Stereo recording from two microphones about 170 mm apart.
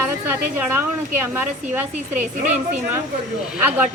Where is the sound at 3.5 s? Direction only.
10° right (ahead or behind).